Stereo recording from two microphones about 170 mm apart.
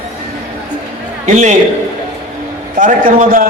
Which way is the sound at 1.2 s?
45° right (ahead or behind).